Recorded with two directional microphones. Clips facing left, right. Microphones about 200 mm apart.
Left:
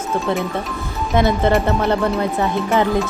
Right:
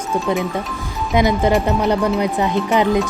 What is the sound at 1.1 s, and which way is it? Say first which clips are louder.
Speech: even; 15° right (ahead or behind).